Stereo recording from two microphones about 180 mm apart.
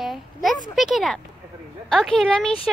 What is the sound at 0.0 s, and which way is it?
A woman's voice, centre (ahead or behind).